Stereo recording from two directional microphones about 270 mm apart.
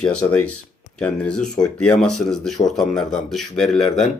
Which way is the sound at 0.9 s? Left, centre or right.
Centre.